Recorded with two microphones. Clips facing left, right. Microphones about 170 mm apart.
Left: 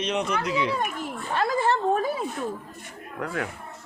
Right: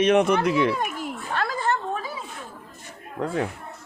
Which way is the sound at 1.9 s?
50° left (ahead or behind).